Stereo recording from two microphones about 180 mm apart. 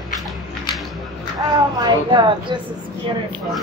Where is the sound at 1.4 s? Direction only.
25° right (ahead or behind).